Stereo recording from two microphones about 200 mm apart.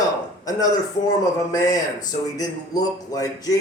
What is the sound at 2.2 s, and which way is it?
Speech, 20° left (ahead or behind).